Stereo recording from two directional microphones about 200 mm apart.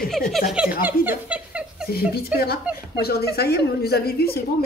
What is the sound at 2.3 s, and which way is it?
A woman's voice, 50° left (ahead or behind).